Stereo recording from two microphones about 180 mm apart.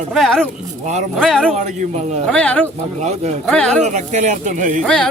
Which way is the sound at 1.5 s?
40° right (ahead or behind).